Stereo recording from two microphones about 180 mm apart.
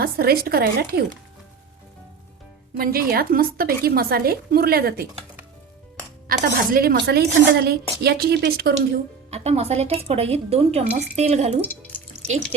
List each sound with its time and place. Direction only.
0.0 s a woman's voice: 60° right (ahead or behind)
2.7 s a woman's voice: 55° right (ahead or behind)
6.2 s a woman's voice: 55° right (ahead or behind)
9.3 s speech: 35° right (ahead or behind)